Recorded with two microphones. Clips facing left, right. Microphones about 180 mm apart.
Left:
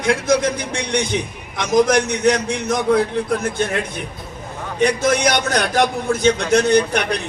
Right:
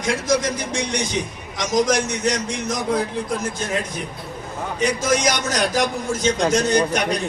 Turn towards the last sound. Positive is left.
turn(degrees=60)  # may be behind; listen again after turning